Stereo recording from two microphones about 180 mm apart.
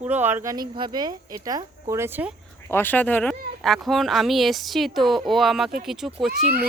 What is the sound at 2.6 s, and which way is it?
Speech, 10° left (ahead or behind).